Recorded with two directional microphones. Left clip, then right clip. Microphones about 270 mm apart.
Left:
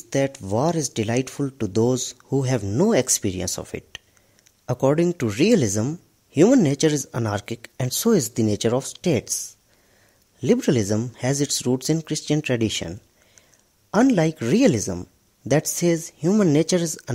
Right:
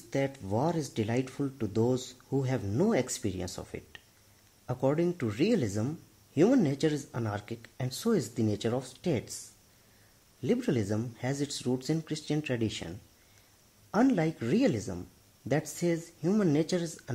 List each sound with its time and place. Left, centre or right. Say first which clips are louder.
0.1 s speech: left 9 dB; left
10.4 s speech: left 10 dB; left